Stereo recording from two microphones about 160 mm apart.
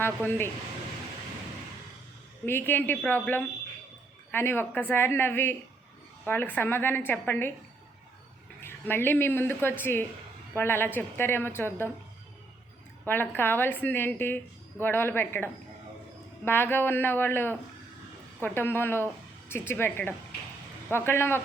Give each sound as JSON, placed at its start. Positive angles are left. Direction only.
{"t": 0.0, "sound": "a woman's voice", "side_deg": 15}
{"t": 2.5, "sound": "a woman's voice", "side_deg": 15}
{"t": 8.6, "sound": "a woman's voice", "side_deg": 15}
{"t": 13.1, "sound": "a woman's voice", "side_deg": 10}